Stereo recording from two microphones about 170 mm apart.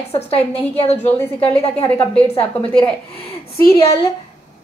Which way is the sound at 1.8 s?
10° left (ahead or behind).